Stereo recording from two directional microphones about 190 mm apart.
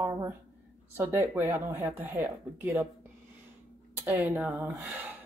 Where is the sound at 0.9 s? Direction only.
10° right (ahead or behind).